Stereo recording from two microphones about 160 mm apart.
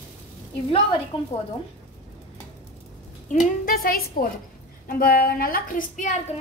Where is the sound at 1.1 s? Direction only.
35° left (ahead or behind).